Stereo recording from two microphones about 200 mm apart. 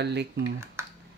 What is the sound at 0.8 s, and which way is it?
Computer keyboard, 15° right (ahead or behind).